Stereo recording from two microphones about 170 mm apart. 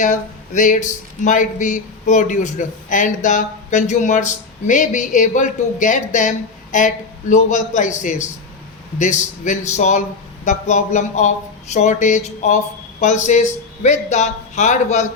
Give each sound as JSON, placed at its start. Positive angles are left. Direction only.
{"t": 0.0, "sound": "speech", "side_deg": 50}